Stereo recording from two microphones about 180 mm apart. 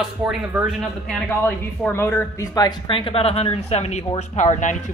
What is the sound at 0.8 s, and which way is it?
Speech, 5° left (ahead or behind).